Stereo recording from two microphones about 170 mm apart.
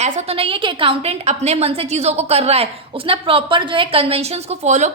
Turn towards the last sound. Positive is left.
turn(degrees=-45)  # may be behind; listen again after turning